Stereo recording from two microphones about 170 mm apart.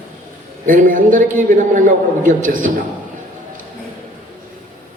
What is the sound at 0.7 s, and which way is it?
Speech, 50° right (ahead or behind).